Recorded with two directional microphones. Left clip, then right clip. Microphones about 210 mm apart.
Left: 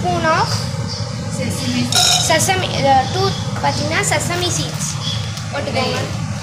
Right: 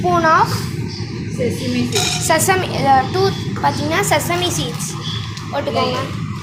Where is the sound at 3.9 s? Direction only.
30° right (ahead or behind).